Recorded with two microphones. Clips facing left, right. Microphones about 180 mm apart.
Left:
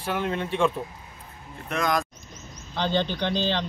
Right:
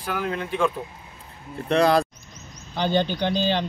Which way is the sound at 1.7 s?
30° right (ahead or behind).